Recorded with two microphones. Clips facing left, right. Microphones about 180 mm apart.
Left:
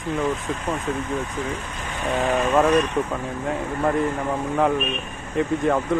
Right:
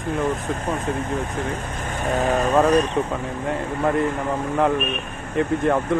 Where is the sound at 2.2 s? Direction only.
40° right (ahead or behind).